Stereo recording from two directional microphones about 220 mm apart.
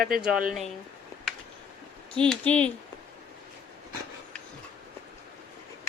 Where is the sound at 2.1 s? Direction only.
5° left (ahead or behind).